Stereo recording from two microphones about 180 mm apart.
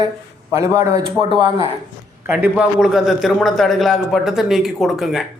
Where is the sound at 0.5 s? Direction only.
15° right (ahead or behind).